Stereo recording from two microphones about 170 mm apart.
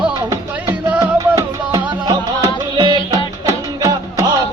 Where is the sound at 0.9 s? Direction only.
20° right (ahead or behind).